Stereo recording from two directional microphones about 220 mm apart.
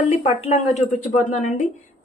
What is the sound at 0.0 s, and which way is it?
Speech, 30° left (ahead or behind).